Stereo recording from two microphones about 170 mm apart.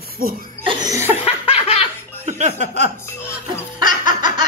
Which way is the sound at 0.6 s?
20° right (ahead or behind).